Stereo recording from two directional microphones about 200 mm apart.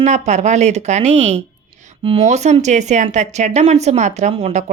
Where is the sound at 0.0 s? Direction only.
35° right (ahead or behind).